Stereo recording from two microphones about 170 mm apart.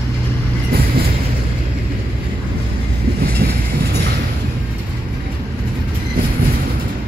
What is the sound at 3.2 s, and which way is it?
Train, 65° right (ahead or behind).